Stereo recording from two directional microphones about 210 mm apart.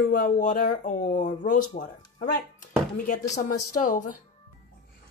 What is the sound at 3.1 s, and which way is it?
Speech, 35° left (ahead or behind).